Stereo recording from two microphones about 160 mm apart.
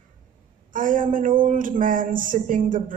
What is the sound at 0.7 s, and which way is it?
A woman's voice, 60° right (ahead or behind).